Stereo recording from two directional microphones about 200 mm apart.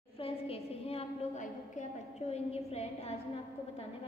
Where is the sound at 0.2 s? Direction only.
30° left (ahead or behind).